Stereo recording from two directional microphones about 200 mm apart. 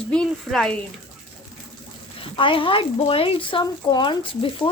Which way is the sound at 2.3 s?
25° left (ahead or behind).